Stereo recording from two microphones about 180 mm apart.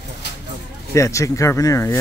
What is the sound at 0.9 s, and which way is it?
Speech, 15° left (ahead or behind).